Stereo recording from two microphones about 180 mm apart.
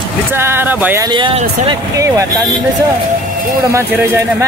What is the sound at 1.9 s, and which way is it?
Speech, 20° right (ahead or behind).